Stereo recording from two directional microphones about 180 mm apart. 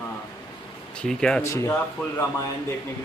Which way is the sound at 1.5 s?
15° left (ahead or behind).